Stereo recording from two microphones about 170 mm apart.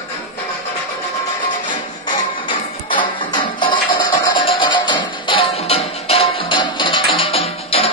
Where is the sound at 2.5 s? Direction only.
30° left (ahead or behind).